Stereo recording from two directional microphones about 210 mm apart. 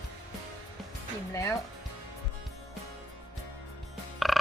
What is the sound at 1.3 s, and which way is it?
Speech, 15° left (ahead or behind).